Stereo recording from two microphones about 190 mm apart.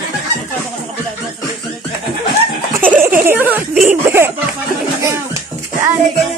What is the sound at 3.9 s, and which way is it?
Cough, 10° right (ahead or behind).